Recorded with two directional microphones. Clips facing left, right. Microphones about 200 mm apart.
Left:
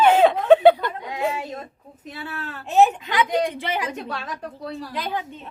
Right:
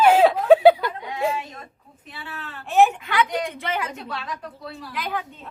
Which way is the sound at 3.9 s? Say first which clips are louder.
Left 2 dB; 45° left (ahead or behind).